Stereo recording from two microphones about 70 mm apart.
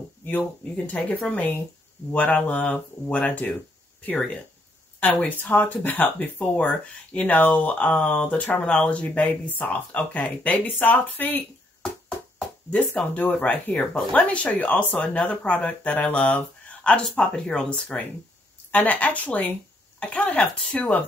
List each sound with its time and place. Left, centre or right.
0.2 s speech: left
5.0 s speech: left
12.9 s speech: left